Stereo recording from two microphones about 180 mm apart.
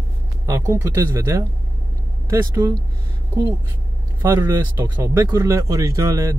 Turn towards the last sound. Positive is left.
turn(degrees=-15)  # may be behind; listen again after turning